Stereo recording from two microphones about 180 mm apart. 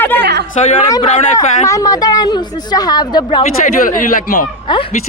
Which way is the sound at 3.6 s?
50° left (ahead or behind).